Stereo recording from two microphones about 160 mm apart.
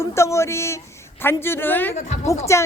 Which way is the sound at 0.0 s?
15° left (ahead or behind).